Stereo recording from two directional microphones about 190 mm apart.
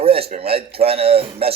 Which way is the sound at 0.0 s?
30° right (ahead or behind).